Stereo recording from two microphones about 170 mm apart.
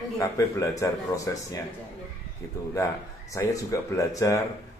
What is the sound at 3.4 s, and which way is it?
Speech, 20° left (ahead or behind).